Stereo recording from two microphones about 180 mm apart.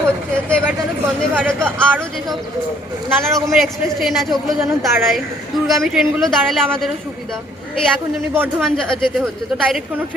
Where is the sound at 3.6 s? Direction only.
Centre (ahead or behind).